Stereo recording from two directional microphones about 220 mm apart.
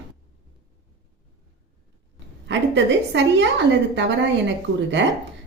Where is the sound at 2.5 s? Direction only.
55° right (ahead or behind).